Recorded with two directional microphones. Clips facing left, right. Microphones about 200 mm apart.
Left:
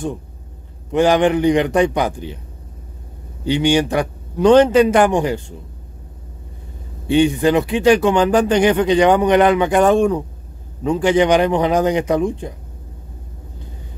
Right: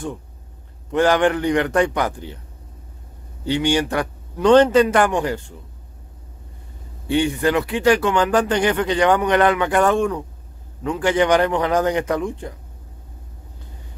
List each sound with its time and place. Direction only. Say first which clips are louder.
0.9 s speech: left 3 dB; 15° left (ahead or behind)
3.4 s speech: left 4 dB; 15° left (ahead or behind)
7.1 s speech: left 5 dB; 20° left (ahead or behind)